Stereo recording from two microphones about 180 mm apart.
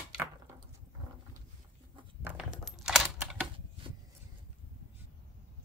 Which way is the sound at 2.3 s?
Centre (ahead or behind).